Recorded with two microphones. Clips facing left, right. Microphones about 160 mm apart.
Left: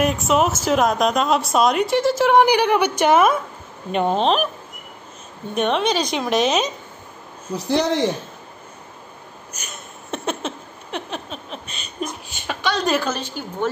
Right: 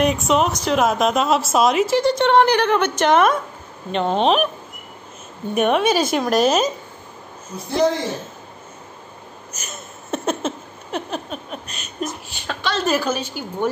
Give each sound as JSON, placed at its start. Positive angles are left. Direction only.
{"t": 0.0, "sound": "a woman's voice", "side_deg": 0}
{"t": 4.2, "sound": "a woman's voice", "side_deg": -5}
{"t": 5.5, "sound": "a woman's voice", "side_deg": -5}
{"t": 7.5, "sound": "a man's voice", "side_deg": 70}
{"t": 9.7, "sound": "a sound", "side_deg": 0}
{"t": 12.0, "sound": "a woman's voice", "side_deg": 0}